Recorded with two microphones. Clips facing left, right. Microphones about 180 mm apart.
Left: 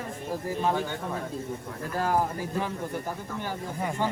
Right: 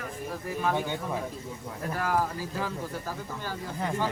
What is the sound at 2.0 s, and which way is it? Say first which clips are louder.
Speech: left 3 dB; 25° left (ahead or behind).